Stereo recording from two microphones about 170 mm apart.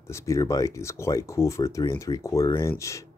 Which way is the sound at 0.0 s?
15° left (ahead or behind).